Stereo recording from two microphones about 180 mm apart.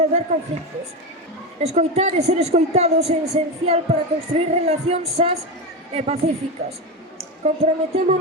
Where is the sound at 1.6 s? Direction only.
35° right (ahead or behind).